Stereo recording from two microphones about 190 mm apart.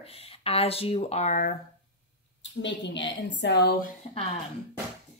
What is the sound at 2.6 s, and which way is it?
A woman's voice, 70° left (ahead or behind).